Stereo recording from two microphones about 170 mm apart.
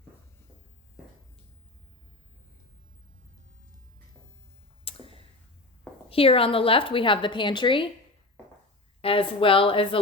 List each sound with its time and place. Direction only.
4.9 s a sound: 35° left (ahead or behind)
6.1 s a woman's voice: 35° left (ahead or behind)
9.0 s a woman's voice: 30° left (ahead or behind)